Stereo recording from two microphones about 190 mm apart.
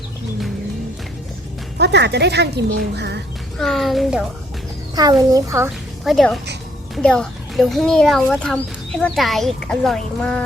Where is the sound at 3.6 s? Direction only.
Centre (ahead or behind).